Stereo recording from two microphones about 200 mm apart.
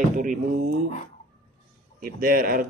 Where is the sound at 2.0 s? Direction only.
45° right (ahead or behind).